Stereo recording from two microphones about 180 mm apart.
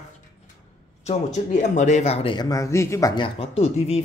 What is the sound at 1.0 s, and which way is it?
Speech, 40° left (ahead or behind).